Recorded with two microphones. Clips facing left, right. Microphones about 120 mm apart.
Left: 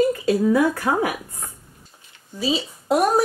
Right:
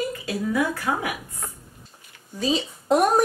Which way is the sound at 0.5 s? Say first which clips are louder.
Left 5 dB; 40° left (ahead or behind).